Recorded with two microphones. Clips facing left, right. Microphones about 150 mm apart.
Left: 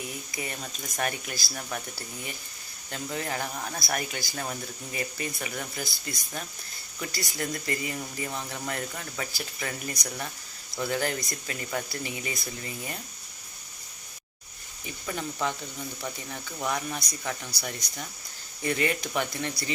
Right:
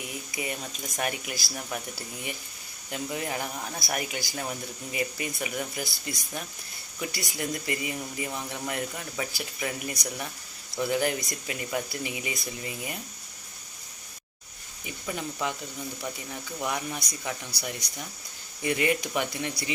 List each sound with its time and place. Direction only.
0.3 s speech: 15° right (ahead or behind)
2.9 s speech: 15° right (ahead or behind)
15.0 s speech: 10° right (ahead or behind)